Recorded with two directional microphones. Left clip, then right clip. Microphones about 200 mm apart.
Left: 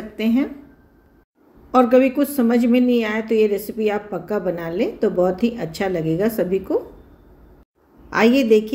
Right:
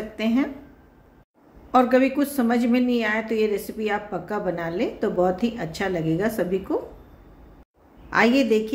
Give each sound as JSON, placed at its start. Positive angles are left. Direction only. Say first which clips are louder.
{"t": 0.2, "sound": "a woman's voice", "louder": "left 3 dB", "side_deg": 15}
{"t": 1.7, "sound": "a woman's voice", "louder": "left 4 dB", "side_deg": 10}
{"t": 8.1, "sound": "a woman's voice", "louder": "left 4 dB", "side_deg": 15}